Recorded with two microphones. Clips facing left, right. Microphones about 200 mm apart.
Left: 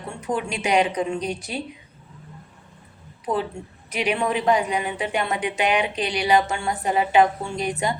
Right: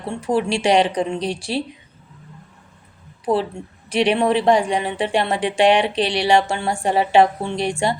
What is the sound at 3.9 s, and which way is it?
A woman's voice, 30° right (ahead or behind).